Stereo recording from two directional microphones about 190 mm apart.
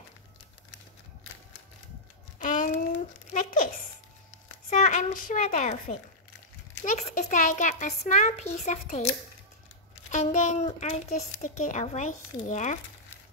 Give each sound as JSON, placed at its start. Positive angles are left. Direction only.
{"t": 2.3, "sound": "a sound", "side_deg": 40}
{"t": 4.6, "sound": "a child's voice", "side_deg": 40}
{"t": 10.1, "sound": "speech", "side_deg": 40}